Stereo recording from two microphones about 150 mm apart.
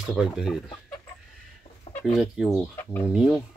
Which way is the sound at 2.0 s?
Centre (ahead or behind).